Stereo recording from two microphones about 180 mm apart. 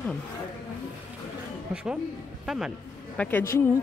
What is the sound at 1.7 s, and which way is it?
A woman's voice, 5° right (ahead or behind).